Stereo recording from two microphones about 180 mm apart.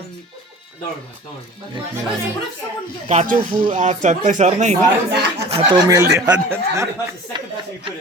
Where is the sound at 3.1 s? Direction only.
40° right (ahead or behind).